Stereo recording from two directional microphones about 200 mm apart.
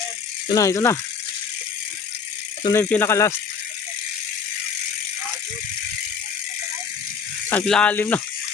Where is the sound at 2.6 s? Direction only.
15° left (ahead or behind).